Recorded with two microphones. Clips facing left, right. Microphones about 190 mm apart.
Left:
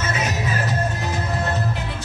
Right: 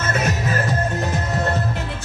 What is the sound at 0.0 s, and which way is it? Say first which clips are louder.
Music: right 2 dB; 55° right (ahead or behind).